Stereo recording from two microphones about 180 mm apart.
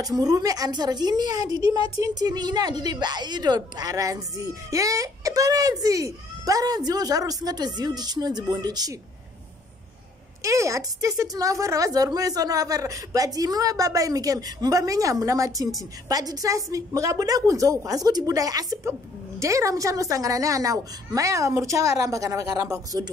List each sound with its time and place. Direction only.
0.0 s a woman's voice: 20° right (ahead or behind)
10.4 s a woman's voice: 15° right (ahead or behind)